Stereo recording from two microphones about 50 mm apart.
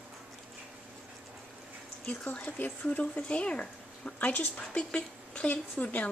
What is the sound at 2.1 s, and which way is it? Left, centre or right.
A woman's voice, left.